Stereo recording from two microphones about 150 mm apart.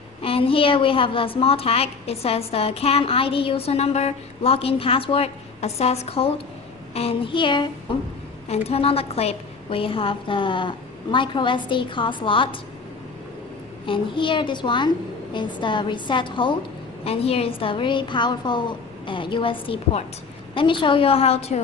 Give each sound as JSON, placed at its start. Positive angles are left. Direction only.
{"t": 0.2, "sound": "a woman's voice", "side_deg": 40}
{"t": 13.8, "sound": "a woman's voice", "side_deg": 35}